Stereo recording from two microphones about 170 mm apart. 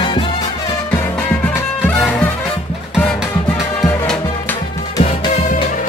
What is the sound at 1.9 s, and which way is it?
Music, 10° left (ahead or behind).